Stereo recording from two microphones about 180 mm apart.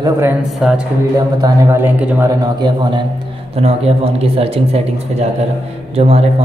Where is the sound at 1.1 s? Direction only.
15° right (ahead or behind).